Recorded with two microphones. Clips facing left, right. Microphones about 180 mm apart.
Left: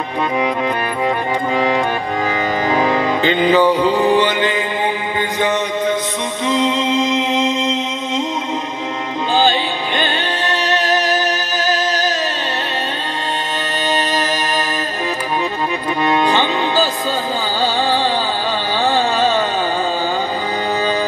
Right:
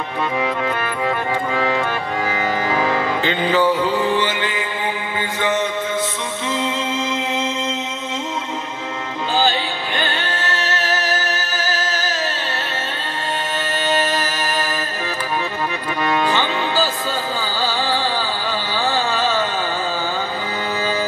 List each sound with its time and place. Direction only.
1.0 s music: 20° left (ahead or behind)
6.4 s music: 15° left (ahead or behind)
9.3 s music: 20° left (ahead or behind)
16.3 s music: 20° left (ahead or behind)
18.8 s a sound: 20° left (ahead or behind)